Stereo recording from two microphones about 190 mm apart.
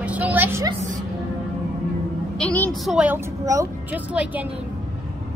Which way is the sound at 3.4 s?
15° right (ahead or behind).